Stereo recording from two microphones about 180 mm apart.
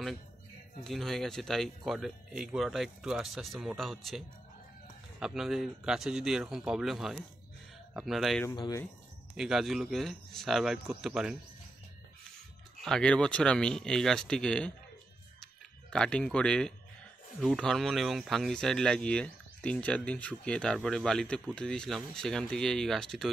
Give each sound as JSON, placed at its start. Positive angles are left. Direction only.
{"t": 0.8, "sound": "speech", "side_deg": 0}
{"t": 5.2, "sound": "speech", "side_deg": 0}
{"t": 8.5, "sound": "speech", "side_deg": 20}
{"t": 9.4, "sound": "speech", "side_deg": 0}
{"t": 12.8, "sound": "speech", "side_deg": 5}
{"t": 15.4, "sound": "a sound", "side_deg": 5}
{"t": 17.4, "sound": "speech", "side_deg": 0}